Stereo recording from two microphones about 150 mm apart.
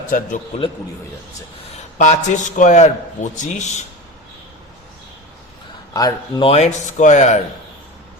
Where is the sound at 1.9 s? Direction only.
50° left (ahead or behind).